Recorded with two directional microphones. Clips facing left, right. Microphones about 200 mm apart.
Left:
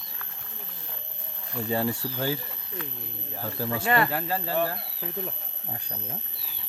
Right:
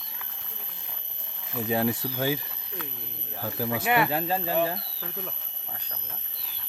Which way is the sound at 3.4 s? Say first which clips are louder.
Right 1 dB; 10° right (ahead or behind).